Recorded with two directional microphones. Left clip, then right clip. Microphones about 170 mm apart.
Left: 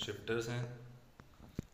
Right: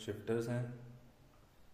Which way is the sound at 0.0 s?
45° right (ahead or behind).